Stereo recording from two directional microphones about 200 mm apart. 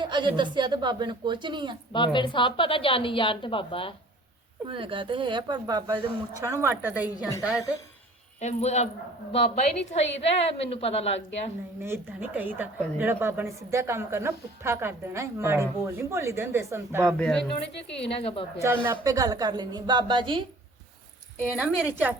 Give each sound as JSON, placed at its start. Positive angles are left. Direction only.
{"t": 0.0, "sound": "a woman's voice", "side_deg": -25}
{"t": 1.9, "sound": "a woman's voice", "side_deg": 25}
{"t": 4.7, "sound": "a woman's voice", "side_deg": -25}
{"t": 8.4, "sound": "a woman's voice", "side_deg": 35}
{"t": 11.8, "sound": "a woman's voice", "side_deg": -10}
{"t": 17.1, "sound": "speech", "side_deg": 5}
{"t": 18.2, "sound": "a woman's voice", "side_deg": 30}
{"t": 18.6, "sound": "a woman's voice", "side_deg": -15}
{"t": 21.5, "sound": "a woman's voice", "side_deg": -5}